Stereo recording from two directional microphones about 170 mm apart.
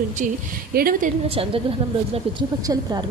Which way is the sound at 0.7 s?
60° right (ahead or behind).